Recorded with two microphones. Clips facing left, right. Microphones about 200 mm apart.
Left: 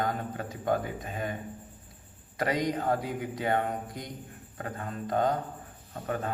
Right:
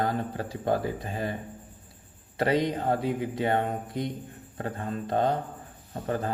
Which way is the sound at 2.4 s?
25° right (ahead or behind).